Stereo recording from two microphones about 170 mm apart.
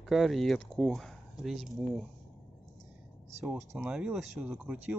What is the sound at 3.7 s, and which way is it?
Speech, 10° right (ahead or behind).